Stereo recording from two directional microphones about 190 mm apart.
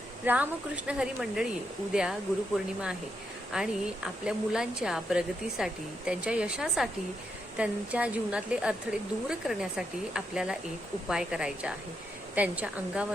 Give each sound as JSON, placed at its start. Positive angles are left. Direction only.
{"t": 0.3, "sound": "a woman's voice", "side_deg": -10}
{"t": 3.5, "sound": "a woman's voice", "side_deg": -5}